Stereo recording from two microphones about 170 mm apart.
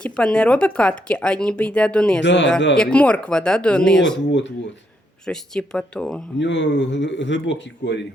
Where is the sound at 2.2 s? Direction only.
90° left.